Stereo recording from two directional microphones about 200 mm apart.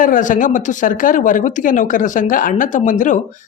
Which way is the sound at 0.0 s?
40° left (ahead or behind).